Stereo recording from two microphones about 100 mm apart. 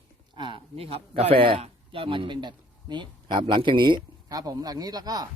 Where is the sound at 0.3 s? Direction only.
50° right (ahead or behind).